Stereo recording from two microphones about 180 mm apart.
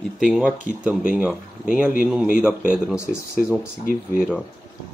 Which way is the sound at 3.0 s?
15° left (ahead or behind).